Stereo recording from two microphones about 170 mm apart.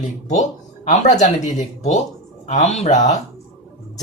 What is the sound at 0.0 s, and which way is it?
Speech, 45° left (ahead or behind).